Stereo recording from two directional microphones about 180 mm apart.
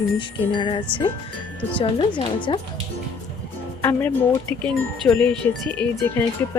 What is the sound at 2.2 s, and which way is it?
Speech, 25° left (ahead or behind).